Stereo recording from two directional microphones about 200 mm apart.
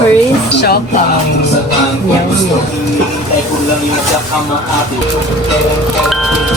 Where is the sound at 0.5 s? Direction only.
55° left (ahead or behind).